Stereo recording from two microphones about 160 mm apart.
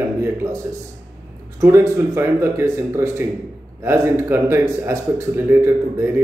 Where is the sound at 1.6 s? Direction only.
15° right (ahead or behind).